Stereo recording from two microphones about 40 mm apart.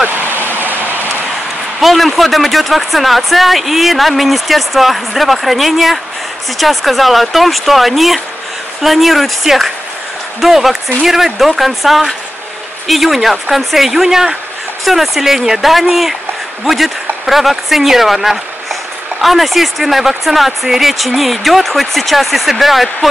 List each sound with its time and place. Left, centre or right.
0.5 s rain: right
1.8 s speech: centre